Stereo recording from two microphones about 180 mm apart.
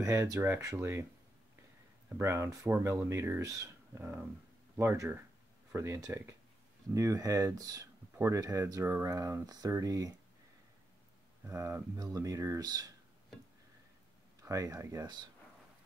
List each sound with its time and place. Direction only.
0.0 s speech: 15° right (ahead or behind)
2.1 s speech: 15° right (ahead or behind)
11.4 s speech: 15° right (ahead or behind)
14.4 s speech: 20° right (ahead or behind)